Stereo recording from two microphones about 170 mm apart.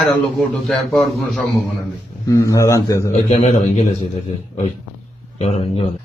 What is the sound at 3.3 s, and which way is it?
Speech, 40° left (ahead or behind).